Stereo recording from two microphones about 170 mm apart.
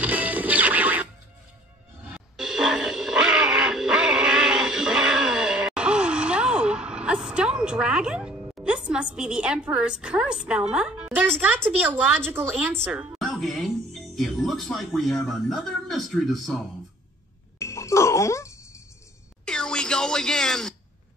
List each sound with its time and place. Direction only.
0.0 s music: 10° right (ahead or behind)
2.1 s music: 5° right (ahead or behind)
11.4 s speech: 10° right (ahead or behind)
17.6 s music: 15° left (ahead or behind)
19.4 s a sound: 5° left (ahead or behind)